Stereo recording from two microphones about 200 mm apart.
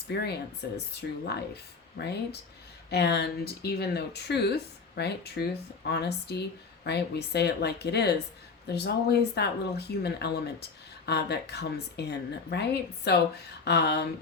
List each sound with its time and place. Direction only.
0.1 s speech: 55° left (ahead or behind)